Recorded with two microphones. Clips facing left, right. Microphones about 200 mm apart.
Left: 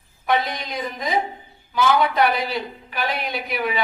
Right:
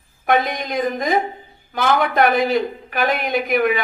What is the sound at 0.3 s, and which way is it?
A woman's voice, 50° right (ahead or behind).